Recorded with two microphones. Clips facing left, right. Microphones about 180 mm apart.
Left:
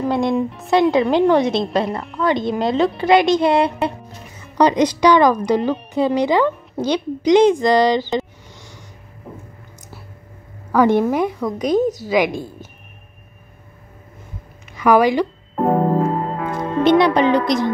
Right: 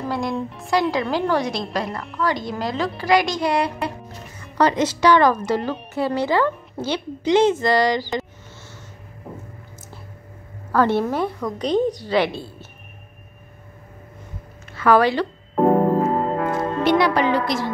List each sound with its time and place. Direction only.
0.1 s a woman's voice: 20° left (ahead or behind)
10.7 s speech: 15° left (ahead or behind)
14.7 s a woman's voice: 15° left (ahead or behind)
16.0 s music: centre (ahead or behind)
16.8 s a woman's voice: 20° left (ahead or behind)